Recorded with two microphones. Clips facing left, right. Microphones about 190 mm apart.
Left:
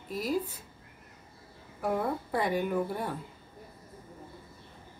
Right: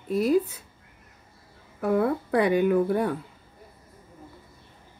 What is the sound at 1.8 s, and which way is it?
Speech, 70° right (ahead or behind).